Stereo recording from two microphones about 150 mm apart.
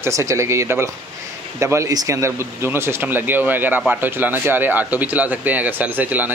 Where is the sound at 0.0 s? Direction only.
20° right (ahead or behind).